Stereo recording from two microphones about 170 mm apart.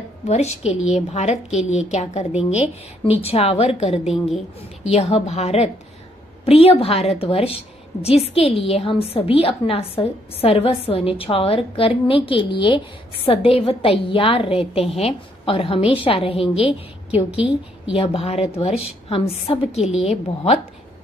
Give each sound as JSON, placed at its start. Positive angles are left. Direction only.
{"t": 0.3, "sound": "a woman's voice", "side_deg": 35}
{"t": 4.0, "sound": "a woman's voice", "side_deg": 0}
{"t": 4.6, "sound": "a woman's voice", "side_deg": 35}
{"t": 17.3, "sound": "a woman's voice", "side_deg": -5}
{"t": 17.9, "sound": "a woman's voice", "side_deg": 35}